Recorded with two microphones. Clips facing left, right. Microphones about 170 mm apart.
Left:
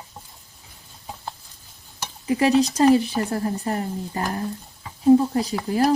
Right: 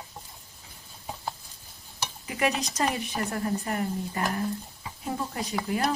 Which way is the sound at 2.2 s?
30° left (ahead or behind).